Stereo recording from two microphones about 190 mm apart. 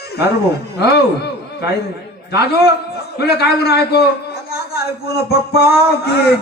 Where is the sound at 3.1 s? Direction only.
55° left (ahead or behind).